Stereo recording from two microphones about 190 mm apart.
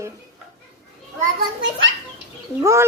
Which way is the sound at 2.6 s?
15° right (ahead or behind).